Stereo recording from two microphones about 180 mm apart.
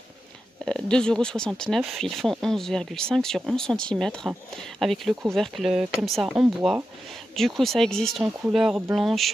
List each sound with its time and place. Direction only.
0.7 s speech: 5° left (ahead or behind)